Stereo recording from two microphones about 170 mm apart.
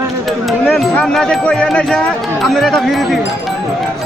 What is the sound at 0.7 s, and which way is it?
Speech, 5° left (ahead or behind).